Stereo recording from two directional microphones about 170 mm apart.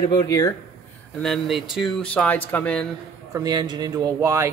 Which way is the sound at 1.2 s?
Centre (ahead or behind).